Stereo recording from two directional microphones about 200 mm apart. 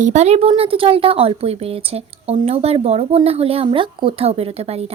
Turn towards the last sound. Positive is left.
turn(degrees=-30)  # may be behind; listen again after turning